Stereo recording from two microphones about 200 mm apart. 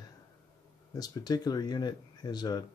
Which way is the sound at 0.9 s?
20° left (ahead or behind).